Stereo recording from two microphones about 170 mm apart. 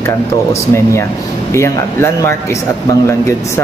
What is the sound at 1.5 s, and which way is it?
Speech, 15° left (ahead or behind).